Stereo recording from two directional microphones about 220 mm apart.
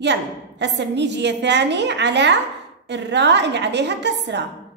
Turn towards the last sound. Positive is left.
turn(degrees=-50)  # may be behind; listen again after turning